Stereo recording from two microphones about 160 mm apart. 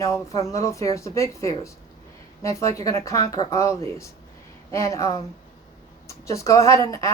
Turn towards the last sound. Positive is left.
turn(degrees=20)  # may be behind; listen again after turning